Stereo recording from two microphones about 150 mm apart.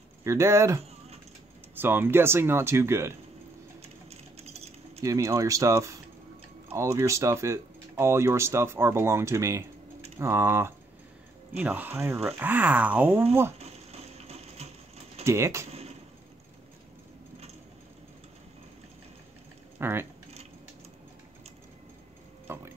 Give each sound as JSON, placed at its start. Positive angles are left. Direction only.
{"t": 0.2, "sound": "speech", "side_deg": -20}
{"t": 4.1, "sound": "keys jangling", "side_deg": -45}
{"t": 5.0, "sound": "speech", "side_deg": -20}
{"t": 13.6, "sound": "ratchet", "side_deg": -45}
{"t": 15.2, "sound": "speech", "side_deg": -20}
{"t": 19.8, "sound": "speech", "side_deg": -15}
{"t": 22.5, "sound": "a sound", "side_deg": -15}